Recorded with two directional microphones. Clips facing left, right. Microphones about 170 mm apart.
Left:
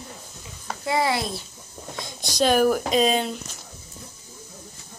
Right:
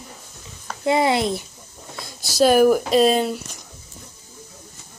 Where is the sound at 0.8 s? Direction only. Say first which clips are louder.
Right 5 dB; 20° right (ahead or behind).